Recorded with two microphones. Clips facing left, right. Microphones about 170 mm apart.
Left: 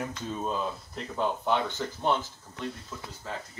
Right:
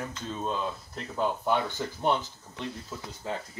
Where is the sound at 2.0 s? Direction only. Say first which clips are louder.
Right 1 dB; 15° right (ahead or behind).